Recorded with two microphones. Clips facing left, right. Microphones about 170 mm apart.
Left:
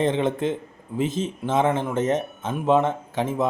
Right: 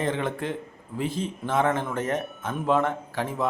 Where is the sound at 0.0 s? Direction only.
25° left (ahead or behind).